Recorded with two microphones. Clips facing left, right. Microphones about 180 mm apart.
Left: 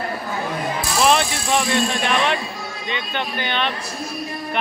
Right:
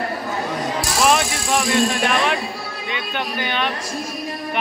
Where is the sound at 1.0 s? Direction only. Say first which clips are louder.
Left 1 dB; 5° right (ahead or behind).